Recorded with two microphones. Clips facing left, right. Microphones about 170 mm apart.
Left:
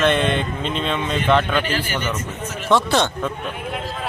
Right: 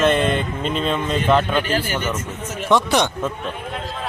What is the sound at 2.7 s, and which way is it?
Speech, 15° right (ahead or behind).